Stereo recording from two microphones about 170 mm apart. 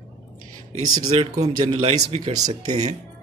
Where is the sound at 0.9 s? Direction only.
25° right (ahead or behind).